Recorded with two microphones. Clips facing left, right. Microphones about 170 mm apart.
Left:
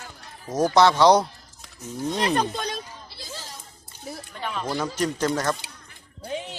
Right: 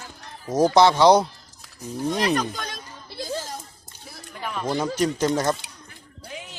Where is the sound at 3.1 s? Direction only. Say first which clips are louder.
Right 13 dB; 50° right (ahead or behind).